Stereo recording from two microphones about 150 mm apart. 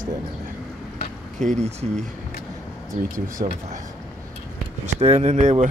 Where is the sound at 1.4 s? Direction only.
50° right (ahead or behind).